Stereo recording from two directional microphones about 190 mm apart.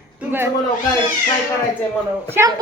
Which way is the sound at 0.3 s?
10° right (ahead or behind).